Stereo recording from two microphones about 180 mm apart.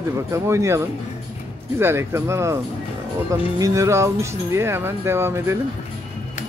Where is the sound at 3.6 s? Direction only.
15° right (ahead or behind).